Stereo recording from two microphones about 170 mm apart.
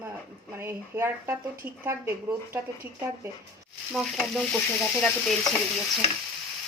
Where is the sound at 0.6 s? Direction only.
15° right (ahead or behind).